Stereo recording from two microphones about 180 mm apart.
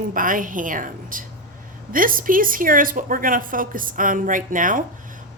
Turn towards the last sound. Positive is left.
turn(degrees=-45)  # may be behind; listen again after turning